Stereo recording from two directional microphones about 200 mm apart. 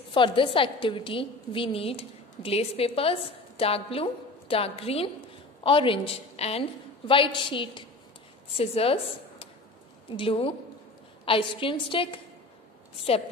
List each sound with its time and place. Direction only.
0.1 s a woman's voice: 25° left (ahead or behind)